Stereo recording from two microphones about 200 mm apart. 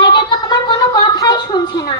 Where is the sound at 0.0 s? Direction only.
20° left (ahead or behind).